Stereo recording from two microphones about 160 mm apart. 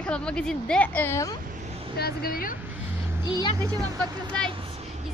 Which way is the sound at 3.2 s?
30° left (ahead or behind).